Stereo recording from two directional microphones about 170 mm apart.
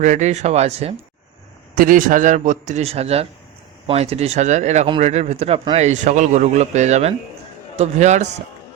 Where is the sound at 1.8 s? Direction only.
55° right (ahead or behind).